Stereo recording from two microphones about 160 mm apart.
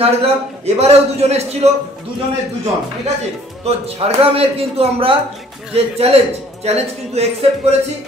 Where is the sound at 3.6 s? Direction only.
40° right (ahead or behind).